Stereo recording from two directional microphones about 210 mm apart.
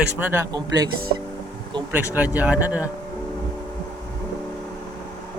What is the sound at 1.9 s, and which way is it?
Speech, 10° right (ahead or behind).